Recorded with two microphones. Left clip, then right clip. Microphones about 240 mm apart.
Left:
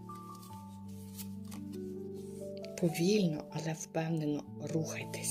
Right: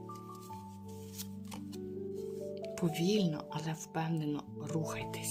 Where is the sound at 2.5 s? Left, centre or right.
Centre.